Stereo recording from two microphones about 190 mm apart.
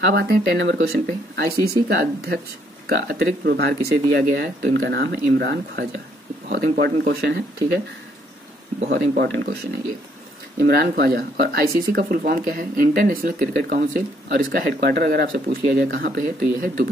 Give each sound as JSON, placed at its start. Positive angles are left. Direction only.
{"t": 0.1, "sound": "speech", "side_deg": -55}
{"t": 8.8, "sound": "speech", "side_deg": -60}
{"t": 10.6, "sound": "speech", "side_deg": -55}